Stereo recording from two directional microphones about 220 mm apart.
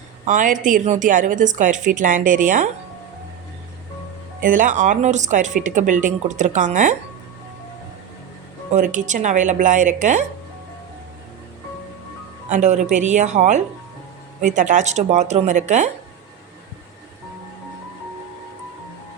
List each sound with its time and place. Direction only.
0.3 s speech: 35° right (ahead or behind)
4.4 s speech: 35° right (ahead or behind)
8.7 s speech: 35° right (ahead or behind)
12.5 s speech: 30° right (ahead or behind)